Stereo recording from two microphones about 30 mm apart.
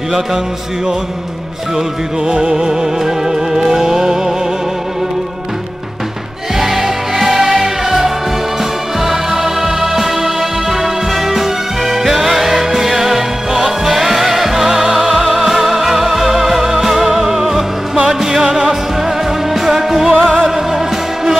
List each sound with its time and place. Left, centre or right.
2.2 s music: right
6.6 s music: centre